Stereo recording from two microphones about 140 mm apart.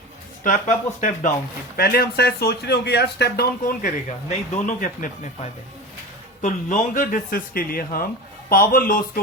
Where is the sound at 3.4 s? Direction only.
90° left.